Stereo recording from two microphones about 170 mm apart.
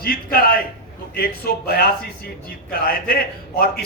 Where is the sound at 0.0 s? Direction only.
60° left (ahead or behind).